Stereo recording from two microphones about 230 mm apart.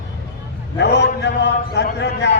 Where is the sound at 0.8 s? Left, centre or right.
Left.